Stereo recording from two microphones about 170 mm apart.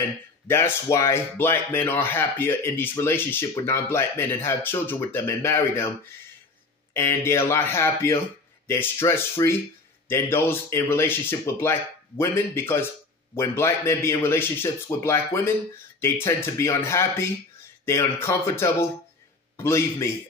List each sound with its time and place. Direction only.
0.5 s speech: 15° left (ahead or behind)
6.9 s speech: 15° left (ahead or behind)